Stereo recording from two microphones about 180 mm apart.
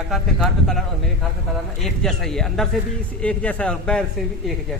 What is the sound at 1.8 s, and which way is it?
A man's voice, 5° left (ahead or behind).